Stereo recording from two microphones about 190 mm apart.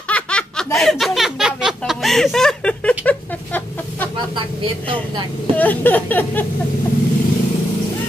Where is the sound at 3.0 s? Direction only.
10° left (ahead or behind).